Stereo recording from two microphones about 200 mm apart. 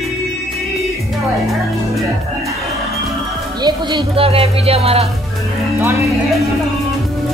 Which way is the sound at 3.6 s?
20° right (ahead or behind).